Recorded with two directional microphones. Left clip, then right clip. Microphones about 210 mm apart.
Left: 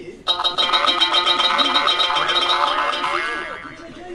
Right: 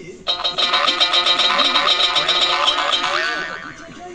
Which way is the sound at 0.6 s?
Centre (ahead or behind).